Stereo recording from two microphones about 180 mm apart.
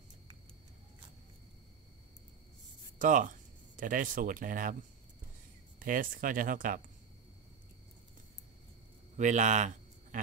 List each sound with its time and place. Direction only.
3.0 s speech: 45° right (ahead or behind)
5.8 s speech: 50° right (ahead or behind)
9.1 s a man's voice: 40° right (ahead or behind)